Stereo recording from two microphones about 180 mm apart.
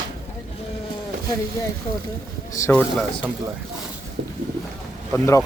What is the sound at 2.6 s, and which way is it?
Speech, 15° left (ahead or behind).